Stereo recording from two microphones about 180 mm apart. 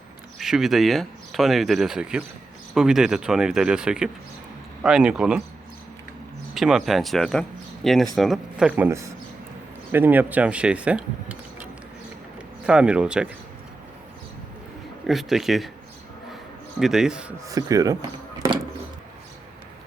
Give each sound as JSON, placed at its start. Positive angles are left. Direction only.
{"t": 0.3, "sound": "speech", "side_deg": 0}
{"t": 6.5, "sound": "speech", "side_deg": 0}
{"t": 15.0, "sound": "speech", "side_deg": 0}
{"t": 16.8, "sound": "speech", "side_deg": -5}
{"t": 17.3, "sound": "speech", "side_deg": -20}